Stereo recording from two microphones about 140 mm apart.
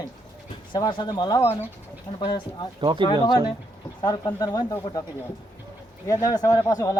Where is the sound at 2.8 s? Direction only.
35° right (ahead or behind).